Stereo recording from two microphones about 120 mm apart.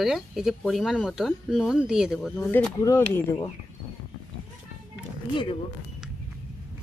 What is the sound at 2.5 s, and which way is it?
Speech, 15° left (ahead or behind).